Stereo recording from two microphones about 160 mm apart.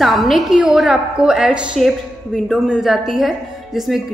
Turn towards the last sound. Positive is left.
turn(degrees=0)  # may be behind; listen again after turning